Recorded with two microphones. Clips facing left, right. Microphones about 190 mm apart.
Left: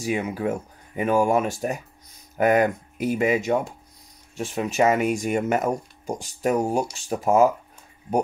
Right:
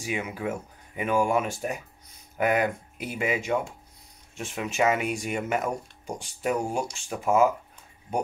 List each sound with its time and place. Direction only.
0.0 s speech: 40° left (ahead or behind)